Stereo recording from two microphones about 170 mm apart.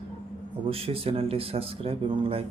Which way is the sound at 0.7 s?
35° right (ahead or behind).